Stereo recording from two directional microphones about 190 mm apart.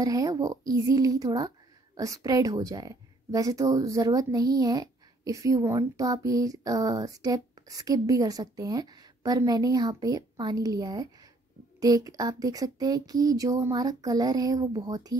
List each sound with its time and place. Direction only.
0.0 s a woman's voice: 20° right (ahead or behind)